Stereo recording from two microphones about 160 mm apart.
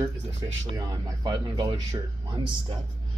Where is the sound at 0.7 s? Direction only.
25° right (ahead or behind).